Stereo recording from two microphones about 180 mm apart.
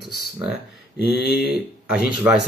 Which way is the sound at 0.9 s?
60° left (ahead or behind).